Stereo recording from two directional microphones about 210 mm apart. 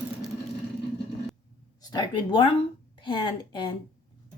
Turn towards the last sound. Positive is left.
turn(degrees=20)  # may be behind; listen again after turning